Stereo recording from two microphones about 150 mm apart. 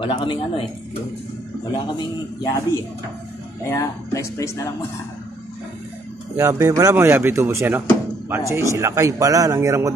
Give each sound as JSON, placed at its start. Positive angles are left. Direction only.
{"t": 0.0, "sound": "speech", "side_deg": 35}
{"t": 2.0, "sound": "speech", "side_deg": 20}
{"t": 3.7, "sound": "speech", "side_deg": 20}
{"t": 6.3, "sound": "a man's voice", "side_deg": -20}